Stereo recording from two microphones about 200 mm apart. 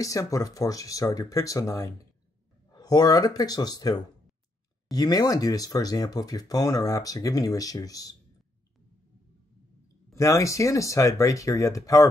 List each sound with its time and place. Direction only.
0.0 s speech: 15° left (ahead or behind)
10.1 s speech: 15° left (ahead or behind)